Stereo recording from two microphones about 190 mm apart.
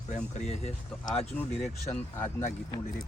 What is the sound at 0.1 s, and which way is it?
Speech, 35° left (ahead or behind).